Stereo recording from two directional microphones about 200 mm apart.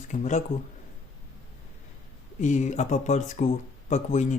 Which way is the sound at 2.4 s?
35° left (ahead or behind).